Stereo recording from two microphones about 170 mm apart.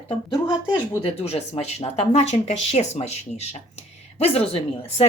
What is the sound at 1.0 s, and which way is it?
Speech, 35° left (ahead or behind).